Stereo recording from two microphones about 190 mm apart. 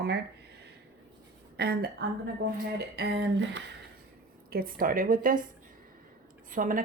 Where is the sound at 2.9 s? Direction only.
60° right (ahead or behind).